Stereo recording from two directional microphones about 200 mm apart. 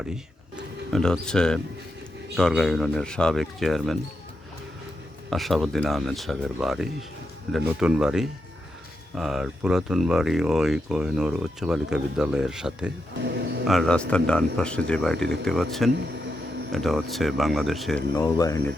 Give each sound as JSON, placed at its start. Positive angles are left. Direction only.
{"t": 0.0, "sound": "speech", "side_deg": -5}
{"t": 5.3, "sound": "speech", "side_deg": 0}
{"t": 18.1, "sound": "speech", "side_deg": 15}